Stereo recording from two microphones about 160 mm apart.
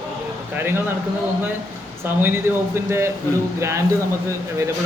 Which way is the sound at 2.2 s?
15° right (ahead or behind).